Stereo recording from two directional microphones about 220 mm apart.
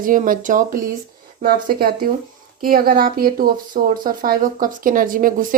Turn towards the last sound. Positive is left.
turn(degrees=-40)  # may be behind; listen again after turning